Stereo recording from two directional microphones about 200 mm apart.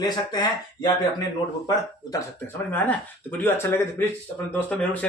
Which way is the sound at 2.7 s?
10° left (ahead or behind).